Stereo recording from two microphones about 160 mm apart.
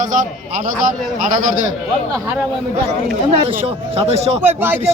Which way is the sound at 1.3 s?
55° right (ahead or behind).